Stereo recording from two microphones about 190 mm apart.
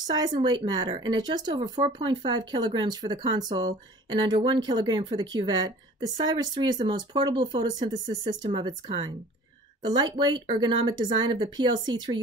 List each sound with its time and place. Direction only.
0.1 s speech: 25° right (ahead or behind)